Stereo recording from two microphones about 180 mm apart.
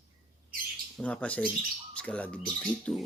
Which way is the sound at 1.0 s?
5° left (ahead or behind).